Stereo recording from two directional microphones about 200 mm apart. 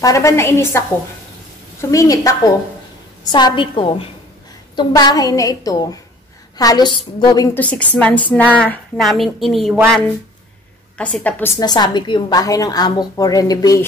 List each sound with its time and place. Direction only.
0.0 s a woman's voice: 15° left (ahead or behind)
7.5 s a woman's voice: 5° left (ahead or behind)
11.0 s a woman's voice: 5° left (ahead or behind)
11.6 s a woman's voice: 20° left (ahead or behind)